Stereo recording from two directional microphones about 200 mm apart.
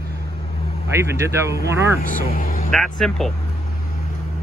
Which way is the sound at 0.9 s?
15° right (ahead or behind).